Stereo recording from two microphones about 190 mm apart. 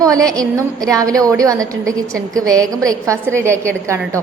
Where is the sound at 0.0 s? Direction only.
20° right (ahead or behind).